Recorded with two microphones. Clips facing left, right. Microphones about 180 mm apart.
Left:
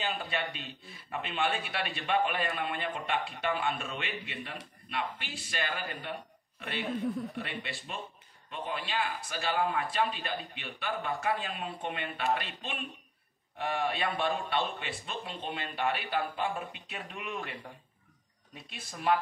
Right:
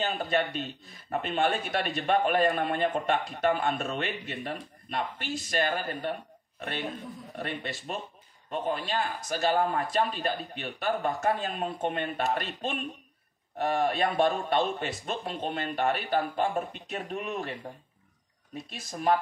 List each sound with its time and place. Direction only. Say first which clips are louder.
0.0 s a man's voice: right 6 dB; 40° right (ahead or behind)
7.3 s speech: right 4 dB; 45° right (ahead or behind)
18.7 s speech: right 3 dB; 40° right (ahead or behind)